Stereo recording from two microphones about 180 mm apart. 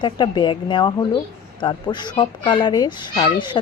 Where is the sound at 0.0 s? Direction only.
25° left (ahead or behind).